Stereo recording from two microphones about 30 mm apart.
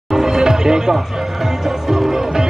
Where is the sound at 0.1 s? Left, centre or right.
Centre.